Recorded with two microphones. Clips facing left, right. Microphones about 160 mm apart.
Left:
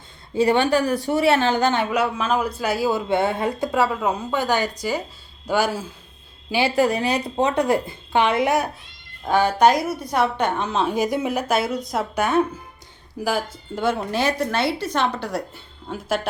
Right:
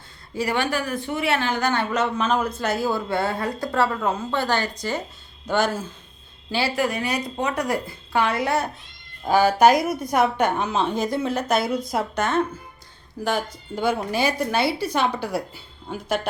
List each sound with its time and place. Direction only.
0.3 s a woman's voice: 30° left (ahead or behind)
1.7 s a woman's voice: 15° left (ahead or behind)
6.7 s a woman's voice: 30° left (ahead or behind); by 8.7 s 15° left (ahead or behind)
9.2 s a woman's voice: 5° right (ahead or behind)
10.8 s a woman's voice: 10° left (ahead or behind)
12.1 s a woman's voice: 10° left (ahead or behind)